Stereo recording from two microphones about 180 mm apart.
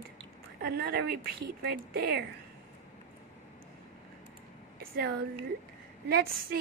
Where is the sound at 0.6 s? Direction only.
60° right (ahead or behind).